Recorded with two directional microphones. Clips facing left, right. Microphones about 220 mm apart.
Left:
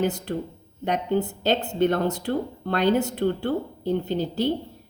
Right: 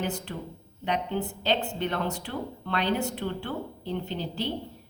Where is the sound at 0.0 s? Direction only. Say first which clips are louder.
Left 7 dB; 40° left (ahead or behind).